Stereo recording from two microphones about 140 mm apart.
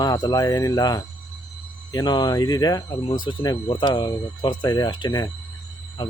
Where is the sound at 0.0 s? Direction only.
25° left (ahead or behind).